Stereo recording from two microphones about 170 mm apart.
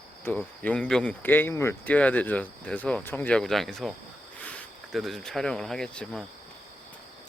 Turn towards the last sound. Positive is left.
turn(degrees=5)  # may be behind; listen again after turning